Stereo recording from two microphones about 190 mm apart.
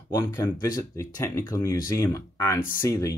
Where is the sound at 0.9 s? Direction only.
15° left (ahead or behind).